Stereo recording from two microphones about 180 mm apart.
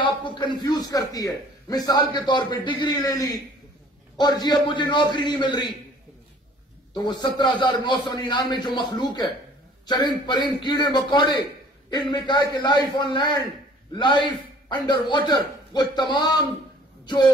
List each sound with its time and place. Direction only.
0.0 s a man's voice: 25° left (ahead or behind)
6.9 s a man's voice: 20° left (ahead or behind)